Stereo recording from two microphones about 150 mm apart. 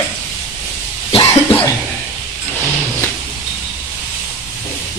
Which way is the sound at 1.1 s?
40° left (ahead or behind).